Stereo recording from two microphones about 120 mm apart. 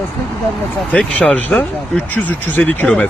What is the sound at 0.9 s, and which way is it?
Speech, 10° left (ahead or behind).